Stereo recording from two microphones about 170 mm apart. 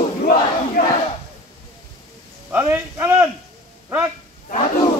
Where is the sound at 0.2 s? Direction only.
55° left (ahead or behind).